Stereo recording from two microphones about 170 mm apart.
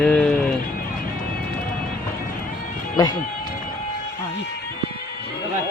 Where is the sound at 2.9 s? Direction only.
20° left (ahead or behind).